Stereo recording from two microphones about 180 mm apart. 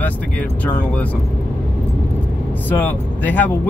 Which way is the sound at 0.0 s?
10° left (ahead or behind).